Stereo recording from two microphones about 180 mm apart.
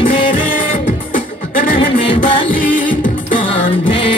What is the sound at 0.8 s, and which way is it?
Music, 50° left (ahead or behind).